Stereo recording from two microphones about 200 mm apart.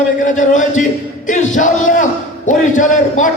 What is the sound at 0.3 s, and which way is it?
Speech, 40° left (ahead or behind).